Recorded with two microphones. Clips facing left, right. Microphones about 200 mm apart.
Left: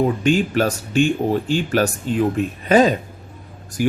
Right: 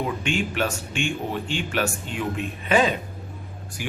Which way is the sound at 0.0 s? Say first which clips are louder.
Left 8 dB; 40° left (ahead or behind).